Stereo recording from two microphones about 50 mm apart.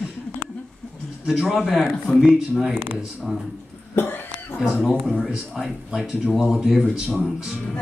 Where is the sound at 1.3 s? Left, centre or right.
Centre.